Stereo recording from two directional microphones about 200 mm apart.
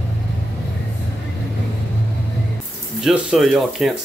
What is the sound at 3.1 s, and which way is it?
Speech, centre (ahead or behind).